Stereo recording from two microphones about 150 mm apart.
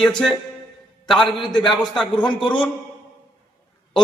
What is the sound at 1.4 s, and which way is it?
A man's voice, 30° left (ahead or behind).